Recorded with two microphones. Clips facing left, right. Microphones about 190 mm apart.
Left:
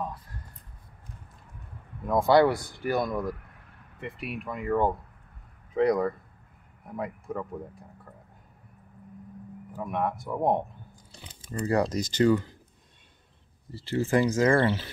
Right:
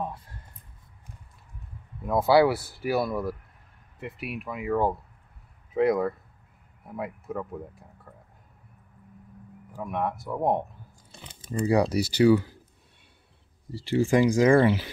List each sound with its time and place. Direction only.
2.0 s speech: 5° right (ahead or behind)
9.7 s speech: centre (ahead or behind)
11.1 s speech: 15° right (ahead or behind)
13.7 s speech: 15° right (ahead or behind)